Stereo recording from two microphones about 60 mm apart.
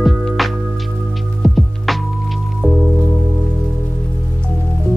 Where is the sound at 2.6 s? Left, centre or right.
Right.